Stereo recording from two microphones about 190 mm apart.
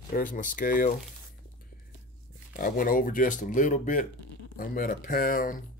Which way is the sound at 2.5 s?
45° left (ahead or behind).